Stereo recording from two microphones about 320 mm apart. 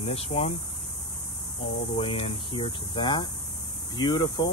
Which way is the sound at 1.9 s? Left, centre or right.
Centre.